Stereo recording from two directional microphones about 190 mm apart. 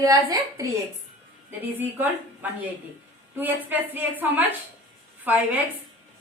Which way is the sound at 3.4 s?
10° right (ahead or behind).